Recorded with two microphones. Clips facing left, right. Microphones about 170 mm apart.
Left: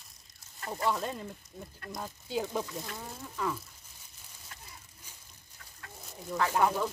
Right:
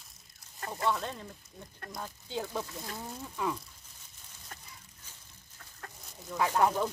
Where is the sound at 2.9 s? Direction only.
15° right (ahead or behind).